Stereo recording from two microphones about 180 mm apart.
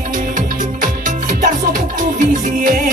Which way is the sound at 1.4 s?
45° right (ahead or behind).